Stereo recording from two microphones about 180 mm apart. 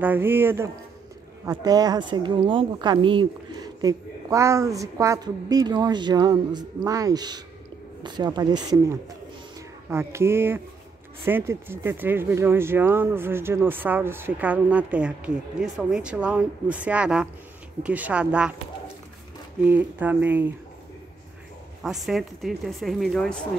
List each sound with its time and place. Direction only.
0.0 s a woman's voice: 10° right (ahead or behind); by 3.3 s 30° right (ahead or behind)
3.8 s a woman's voice: 15° right (ahead or behind)
19.6 s speech: 10° right (ahead or behind)
21.8 s speech: centre (ahead or behind)